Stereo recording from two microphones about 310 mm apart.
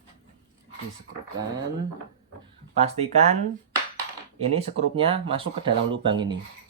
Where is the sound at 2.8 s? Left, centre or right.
Right.